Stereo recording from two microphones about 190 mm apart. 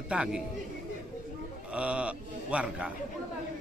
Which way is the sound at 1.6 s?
5° right (ahead or behind).